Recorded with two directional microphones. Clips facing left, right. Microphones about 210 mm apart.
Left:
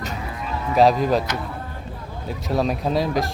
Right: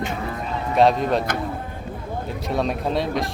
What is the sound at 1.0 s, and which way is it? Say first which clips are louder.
Speech: left 1 dB; centre (ahead or behind).